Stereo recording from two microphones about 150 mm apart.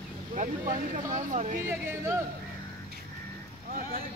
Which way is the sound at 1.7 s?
15° right (ahead or behind).